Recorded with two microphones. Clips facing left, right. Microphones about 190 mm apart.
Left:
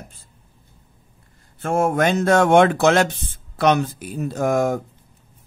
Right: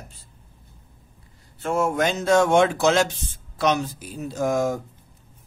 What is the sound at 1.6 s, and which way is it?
Speech, 55° left (ahead or behind).